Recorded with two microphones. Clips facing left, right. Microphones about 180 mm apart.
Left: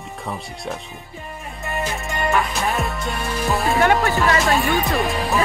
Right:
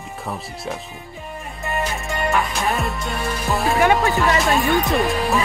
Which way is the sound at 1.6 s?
Centre (ahead or behind).